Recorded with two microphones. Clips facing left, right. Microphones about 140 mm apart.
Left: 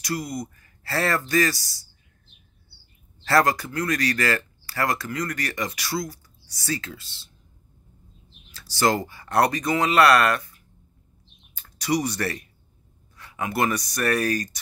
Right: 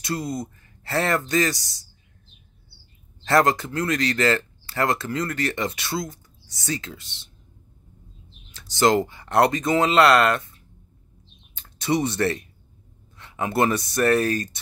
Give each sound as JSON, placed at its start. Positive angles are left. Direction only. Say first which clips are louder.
{"t": 0.0, "sound": "speech", "louder": "right 1 dB", "side_deg": -25}
{"t": 3.3, "sound": "speech", "louder": "right 1 dB", "side_deg": -20}
{"t": 8.5, "sound": "speech", "louder": "right 3 dB", "side_deg": -20}